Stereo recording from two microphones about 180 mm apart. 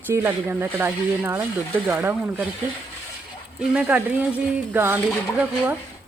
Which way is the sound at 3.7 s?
5° right (ahead or behind).